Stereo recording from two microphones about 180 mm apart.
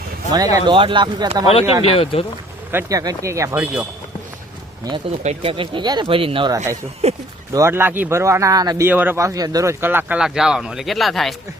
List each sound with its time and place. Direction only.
0.3 s speech: 20° right (ahead or behind)
1.8 s speech: 35° left (ahead or behind)
2.7 s speech: 20° right (ahead or behind)
4.9 s speech: 20° right (ahead or behind)
5.2 s speech: 35° right (ahead or behind)
7.5 s speech: 15° right (ahead or behind); by 11.3 s centre (ahead or behind)